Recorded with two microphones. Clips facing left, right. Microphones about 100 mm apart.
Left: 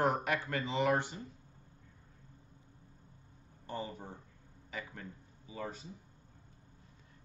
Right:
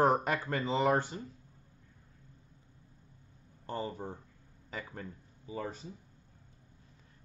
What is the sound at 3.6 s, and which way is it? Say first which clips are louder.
A man's voice: right 4 dB; 40° right (ahead or behind).